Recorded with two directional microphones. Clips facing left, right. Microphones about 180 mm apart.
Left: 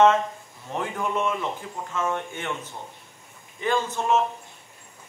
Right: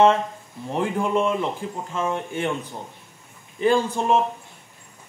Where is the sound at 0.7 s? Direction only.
30° right (ahead or behind).